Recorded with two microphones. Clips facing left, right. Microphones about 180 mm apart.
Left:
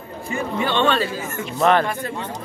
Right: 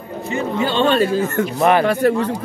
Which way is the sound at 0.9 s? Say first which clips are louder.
Right 8 dB; 60° right (ahead or behind).